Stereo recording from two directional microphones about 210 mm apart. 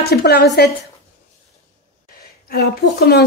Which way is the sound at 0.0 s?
50° left (ahead or behind).